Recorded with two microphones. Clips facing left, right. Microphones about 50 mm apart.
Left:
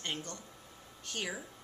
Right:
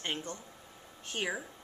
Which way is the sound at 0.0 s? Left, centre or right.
Centre.